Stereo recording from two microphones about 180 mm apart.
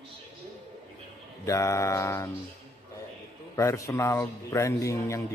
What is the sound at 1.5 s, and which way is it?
Speech, 15° left (ahead or behind).